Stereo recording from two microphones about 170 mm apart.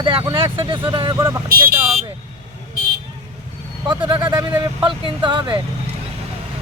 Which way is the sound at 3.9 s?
30° right (ahead or behind).